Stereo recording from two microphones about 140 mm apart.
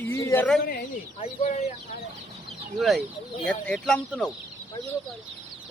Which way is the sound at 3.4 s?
5° left (ahead or behind).